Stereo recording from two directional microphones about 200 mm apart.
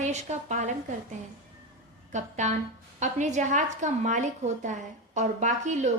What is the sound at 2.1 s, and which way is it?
A woman's voice, 35° right (ahead or behind).